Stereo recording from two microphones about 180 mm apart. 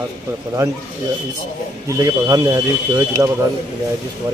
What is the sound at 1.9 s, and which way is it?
Speech, 20° right (ahead or behind).